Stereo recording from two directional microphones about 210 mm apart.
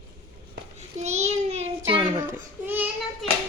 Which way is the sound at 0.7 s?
30° right (ahead or behind).